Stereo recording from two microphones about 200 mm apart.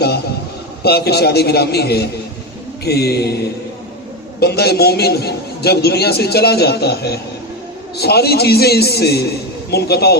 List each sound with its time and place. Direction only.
0.8 s a man's voice: 50° left (ahead or behind)
4.4 s a man's voice: 55° left (ahead or behind)